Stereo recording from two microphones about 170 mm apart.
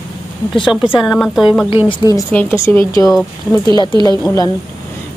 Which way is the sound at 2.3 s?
10° left (ahead or behind).